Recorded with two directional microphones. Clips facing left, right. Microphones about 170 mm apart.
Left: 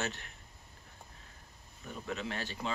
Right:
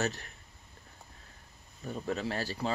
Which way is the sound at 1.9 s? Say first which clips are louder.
Right 5 dB; 40° right (ahead or behind).